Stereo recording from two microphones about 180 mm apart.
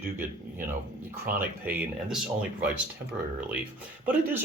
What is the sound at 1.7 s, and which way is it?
Speech, 5° right (ahead or behind).